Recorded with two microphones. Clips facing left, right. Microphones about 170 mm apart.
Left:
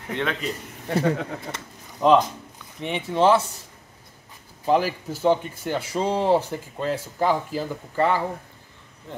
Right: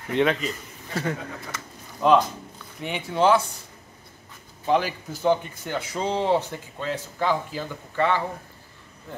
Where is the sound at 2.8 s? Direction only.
Centre (ahead or behind).